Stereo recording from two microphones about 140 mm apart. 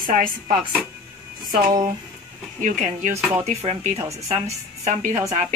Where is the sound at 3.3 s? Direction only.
45° right (ahead or behind).